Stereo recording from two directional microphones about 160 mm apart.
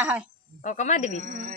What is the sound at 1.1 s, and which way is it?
Speech, 55° right (ahead or behind).